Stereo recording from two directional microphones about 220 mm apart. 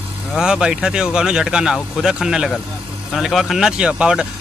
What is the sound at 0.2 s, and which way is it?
Speech, centre (ahead or behind).